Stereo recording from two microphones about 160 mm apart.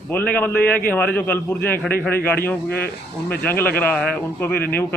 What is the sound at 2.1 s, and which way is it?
A man's voice, 10° left (ahead or behind).